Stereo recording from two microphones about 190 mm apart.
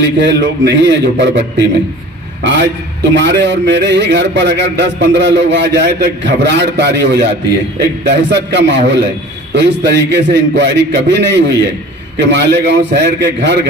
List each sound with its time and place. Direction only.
0.0 s a man's voice: 65° right (ahead or behind)